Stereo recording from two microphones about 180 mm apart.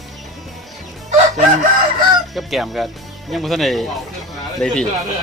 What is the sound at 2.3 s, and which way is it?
Speech, centre (ahead or behind).